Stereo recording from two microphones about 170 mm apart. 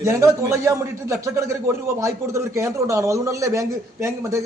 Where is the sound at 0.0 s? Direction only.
15° right (ahead or behind).